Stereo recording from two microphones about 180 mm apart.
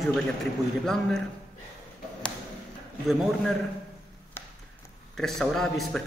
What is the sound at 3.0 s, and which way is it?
Speech, centre (ahead or behind).